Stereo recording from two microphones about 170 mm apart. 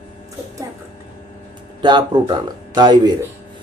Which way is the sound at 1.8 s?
25° right (ahead or behind).